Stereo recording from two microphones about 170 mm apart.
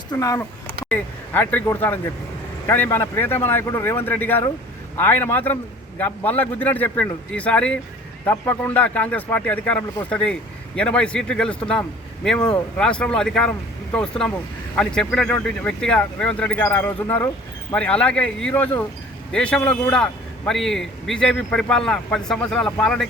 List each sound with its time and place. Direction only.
0.1 s a man's voice: 20° left (ahead or behind); by 23.0 s 5° left (ahead or behind)